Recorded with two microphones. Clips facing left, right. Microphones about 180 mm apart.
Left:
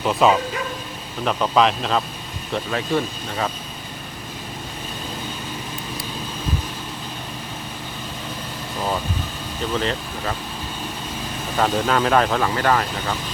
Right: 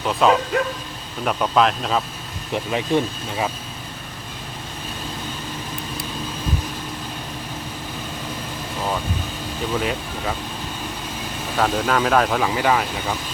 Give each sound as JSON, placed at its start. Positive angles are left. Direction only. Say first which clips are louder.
{"t": 0.0, "sound": "speech", "louder": "even", "side_deg": 0}
{"t": 2.5, "sound": "speech", "louder": "right 2 dB", "side_deg": -15}
{"t": 9.7, "sound": "speech", "louder": "even", "side_deg": -10}
{"t": 11.5, "sound": "speech", "louder": "even", "side_deg": 0}